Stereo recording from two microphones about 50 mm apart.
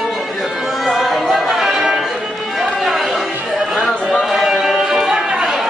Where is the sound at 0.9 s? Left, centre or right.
Centre.